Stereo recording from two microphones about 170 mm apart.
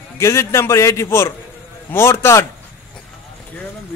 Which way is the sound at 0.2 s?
15° left (ahead or behind).